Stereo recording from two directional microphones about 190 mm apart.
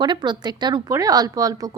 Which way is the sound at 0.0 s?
25° right (ahead or behind).